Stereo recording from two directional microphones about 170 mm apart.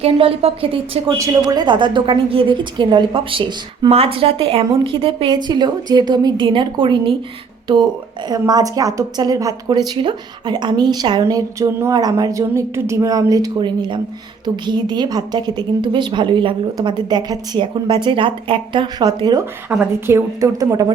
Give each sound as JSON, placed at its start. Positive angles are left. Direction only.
{"t": 0.0, "sound": "a woman's voice", "side_deg": -35}
{"t": 1.2, "sound": "a woman's voice", "side_deg": -20}
{"t": 8.3, "sound": "a woman's voice", "side_deg": -20}
{"t": 19.7, "sound": "a woman's voice", "side_deg": -10}